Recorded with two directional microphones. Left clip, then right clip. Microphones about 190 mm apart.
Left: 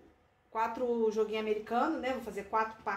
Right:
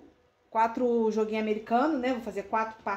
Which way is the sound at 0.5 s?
55° right (ahead or behind).